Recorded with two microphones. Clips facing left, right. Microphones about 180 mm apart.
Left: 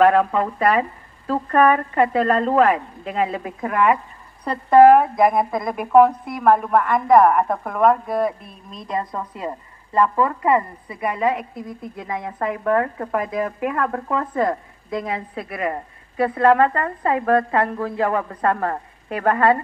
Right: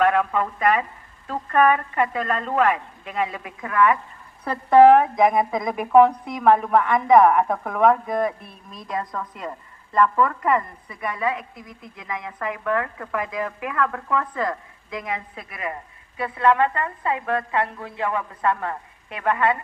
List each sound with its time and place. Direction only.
0.0 s a woman's voice: 40° left (ahead or behind)
4.5 s a woman's voice: 10° left (ahead or behind)
8.7 s a woman's voice: 25° left (ahead or behind)